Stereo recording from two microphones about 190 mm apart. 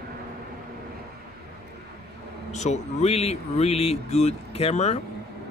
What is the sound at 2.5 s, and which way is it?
Speech, 35° left (ahead or behind).